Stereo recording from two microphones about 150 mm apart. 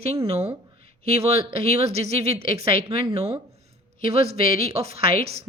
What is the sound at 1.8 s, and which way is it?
Speech, 45° right (ahead or behind).